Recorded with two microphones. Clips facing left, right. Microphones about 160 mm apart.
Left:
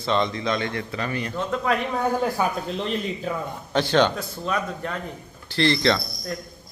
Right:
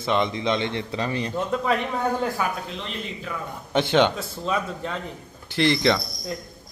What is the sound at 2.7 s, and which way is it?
Speech, 40° left (ahead or behind).